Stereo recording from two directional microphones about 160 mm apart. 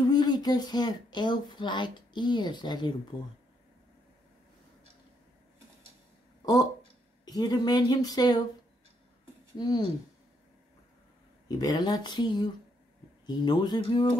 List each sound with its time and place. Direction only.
0.0 s speech: 25° left (ahead or behind)
6.4 s speech: 25° left (ahead or behind)
9.6 s speech: 25° left (ahead or behind)
11.4 s speech: 25° left (ahead or behind)